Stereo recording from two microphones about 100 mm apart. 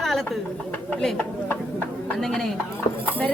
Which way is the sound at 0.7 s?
15° left (ahead or behind).